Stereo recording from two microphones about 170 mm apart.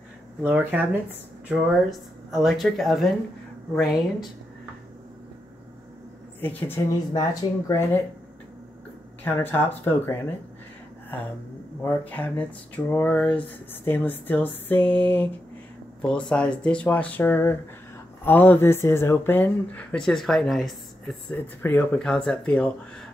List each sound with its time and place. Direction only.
0.4 s speech: 10° right (ahead or behind)
6.4 s speech: 15° left (ahead or behind)
9.2 s speech: 10° left (ahead or behind)
11.8 s speech: 10° left (ahead or behind)